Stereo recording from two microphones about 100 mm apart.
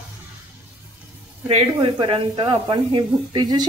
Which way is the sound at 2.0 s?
55° right (ahead or behind).